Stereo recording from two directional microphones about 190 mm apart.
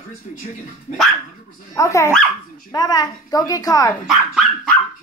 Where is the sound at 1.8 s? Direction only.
15° left (ahead or behind).